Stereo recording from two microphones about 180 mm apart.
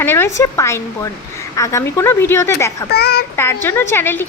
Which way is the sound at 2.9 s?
60° left (ahead or behind).